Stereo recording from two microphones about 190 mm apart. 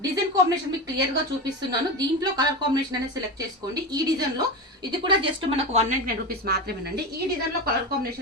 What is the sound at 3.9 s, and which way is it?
A woman's voice, 20° right (ahead or behind).